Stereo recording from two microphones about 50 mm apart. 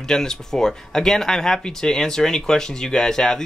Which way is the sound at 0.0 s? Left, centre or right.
Centre.